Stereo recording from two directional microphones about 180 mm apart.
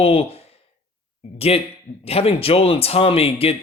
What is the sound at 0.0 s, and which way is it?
Speech, 35° left (ahead or behind).